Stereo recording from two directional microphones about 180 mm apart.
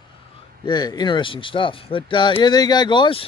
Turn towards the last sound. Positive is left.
turn(degrees=30)  # may be behind; listen again after turning